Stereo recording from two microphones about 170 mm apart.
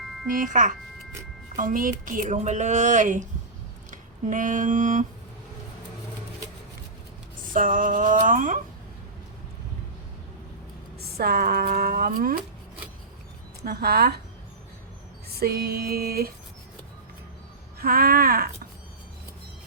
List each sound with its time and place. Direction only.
0.3 s speech: 50° right (ahead or behind)
7.5 s speech: 50° right (ahead or behind)
11.0 s a woman's voice: 65° right (ahead or behind)
13.6 s speech: 65° right (ahead or behind)
15.4 s a woman's voice: 65° right (ahead or behind)
17.7 s a woman's voice: 60° right (ahead or behind)